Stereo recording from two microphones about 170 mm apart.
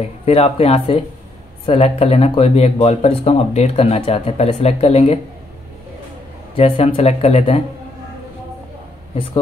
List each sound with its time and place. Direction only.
0.2 s speech: 35° left (ahead or behind)
6.5 s speech: 35° left (ahead or behind)